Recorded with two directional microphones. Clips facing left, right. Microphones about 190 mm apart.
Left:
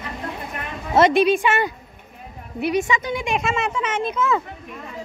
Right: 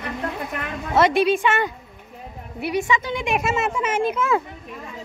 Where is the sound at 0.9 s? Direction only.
20° left (ahead or behind).